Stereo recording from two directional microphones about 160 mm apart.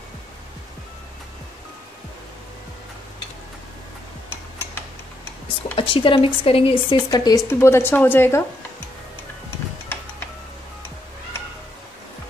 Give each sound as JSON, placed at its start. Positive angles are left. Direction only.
{"t": 5.8, "sound": "speech", "side_deg": 35}
{"t": 7.1, "sound": "a woman's voice", "side_deg": 20}